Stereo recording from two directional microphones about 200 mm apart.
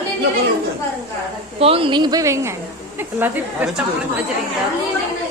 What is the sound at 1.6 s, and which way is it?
A woman's voice, 30° right (ahead or behind).